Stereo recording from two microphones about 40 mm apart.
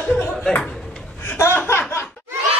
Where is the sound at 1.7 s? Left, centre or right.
Left.